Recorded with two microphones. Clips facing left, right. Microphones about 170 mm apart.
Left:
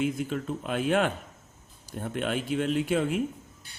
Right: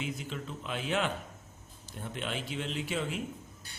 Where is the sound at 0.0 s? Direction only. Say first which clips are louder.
Left 9 dB; 50° left (ahead or behind).